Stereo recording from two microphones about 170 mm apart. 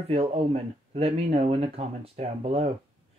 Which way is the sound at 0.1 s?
35° right (ahead or behind).